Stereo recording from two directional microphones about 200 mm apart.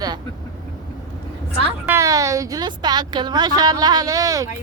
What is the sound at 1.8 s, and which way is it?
A woman's voice, 15° right (ahead or behind).